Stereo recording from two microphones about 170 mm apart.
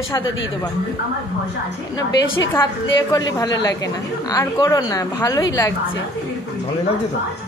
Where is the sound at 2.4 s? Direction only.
15° left (ahead or behind).